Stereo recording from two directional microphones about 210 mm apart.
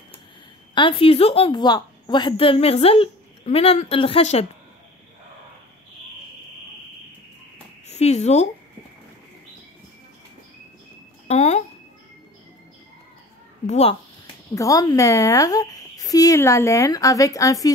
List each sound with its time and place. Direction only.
0.7 s a woman's voice: 25° left (ahead or behind)
7.9 s speech: 30° left (ahead or behind)
11.2 s speech: 30° left (ahead or behind)
13.7 s a woman's voice: 30° left (ahead or behind)
14.5 s speech: 15° left (ahead or behind)